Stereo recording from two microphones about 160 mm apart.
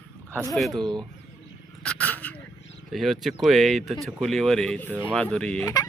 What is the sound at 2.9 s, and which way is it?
Speech, centre (ahead or behind).